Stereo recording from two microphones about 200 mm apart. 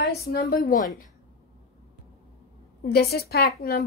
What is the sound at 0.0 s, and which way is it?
Speech, 50° left (ahead or behind).